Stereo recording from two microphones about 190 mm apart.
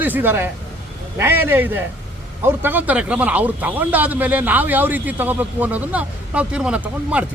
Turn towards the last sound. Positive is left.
turn(degrees=-5)  # may be behind; listen again after turning